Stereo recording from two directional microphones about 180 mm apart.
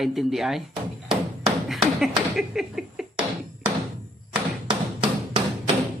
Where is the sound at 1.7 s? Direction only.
Centre (ahead or behind).